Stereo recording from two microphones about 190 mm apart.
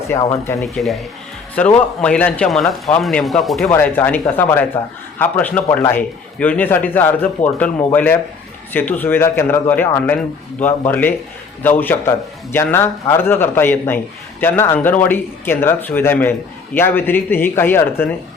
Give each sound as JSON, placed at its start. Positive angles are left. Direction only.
{"t": 0.1, "sound": "a man's voice", "side_deg": 15}